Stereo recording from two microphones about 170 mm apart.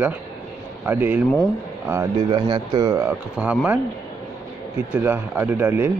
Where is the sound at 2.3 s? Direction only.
35° right (ahead or behind).